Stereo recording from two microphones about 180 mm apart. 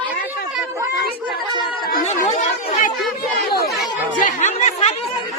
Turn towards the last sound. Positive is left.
turn(degrees=40)  # may be behind; listen again after turning